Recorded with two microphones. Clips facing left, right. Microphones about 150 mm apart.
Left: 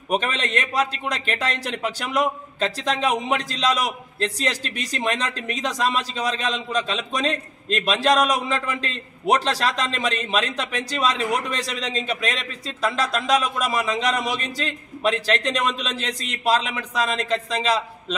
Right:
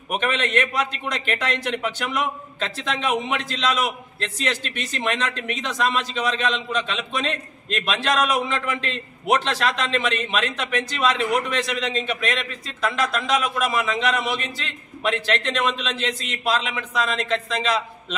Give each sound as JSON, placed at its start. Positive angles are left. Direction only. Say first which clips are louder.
{"t": 0.1, "sound": "a man's voice", "louder": "right 1 dB", "side_deg": 35}